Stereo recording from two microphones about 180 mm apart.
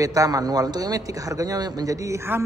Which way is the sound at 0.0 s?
20° right (ahead or behind).